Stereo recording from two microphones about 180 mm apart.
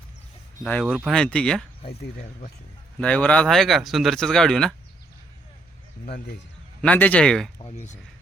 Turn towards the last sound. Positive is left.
turn(degrees=40)  # may be behind; listen again after turning